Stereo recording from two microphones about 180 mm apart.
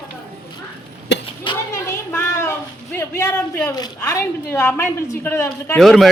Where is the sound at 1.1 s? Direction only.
75° left (ahead or behind).